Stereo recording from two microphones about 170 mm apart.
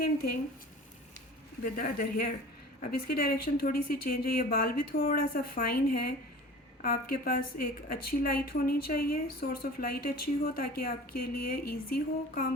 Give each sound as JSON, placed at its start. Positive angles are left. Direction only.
{"t": 1.6, "sound": "a woman's voice", "side_deg": 55}